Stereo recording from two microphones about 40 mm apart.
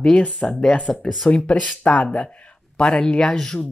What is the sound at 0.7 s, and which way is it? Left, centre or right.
Speech, left.